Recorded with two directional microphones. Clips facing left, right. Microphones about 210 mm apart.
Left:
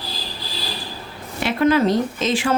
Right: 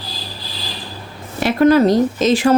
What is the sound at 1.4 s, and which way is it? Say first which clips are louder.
Speech: right 5 dB; 40° right (ahead or behind).